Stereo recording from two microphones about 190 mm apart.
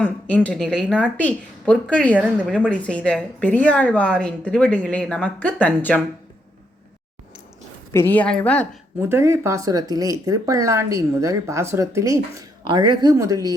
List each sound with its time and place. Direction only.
0.0 s a woman's voice: 5° left (ahead or behind)
2.1 s speech: 5° right (ahead or behind)
2.5 s a woman's voice: 5° left (ahead or behind)
7.9 s a woman's voice: 10° left (ahead or behind)
9.0 s speech: 10° right (ahead or behind)